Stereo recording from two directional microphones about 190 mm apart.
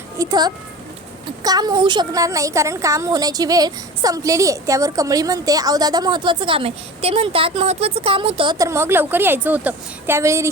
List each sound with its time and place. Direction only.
0.2 s a woman's voice: 20° right (ahead or behind)